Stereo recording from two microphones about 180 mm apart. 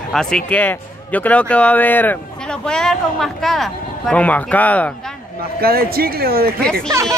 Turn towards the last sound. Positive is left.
turn(degrees=5)  # may be behind; listen again after turning